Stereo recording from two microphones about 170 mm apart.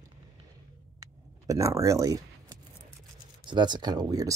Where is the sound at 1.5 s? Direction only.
20° right (ahead or behind).